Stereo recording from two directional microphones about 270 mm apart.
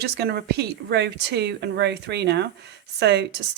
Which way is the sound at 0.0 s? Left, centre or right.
Right.